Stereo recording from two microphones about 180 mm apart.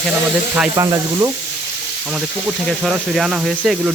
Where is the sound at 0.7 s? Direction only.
15° right (ahead or behind).